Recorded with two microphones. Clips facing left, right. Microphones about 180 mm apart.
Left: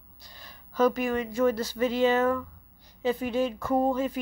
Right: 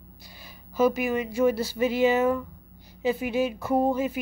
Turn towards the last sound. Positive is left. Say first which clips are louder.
# right 1 dB
turn(degrees=-10)  # may be behind; listen again after turning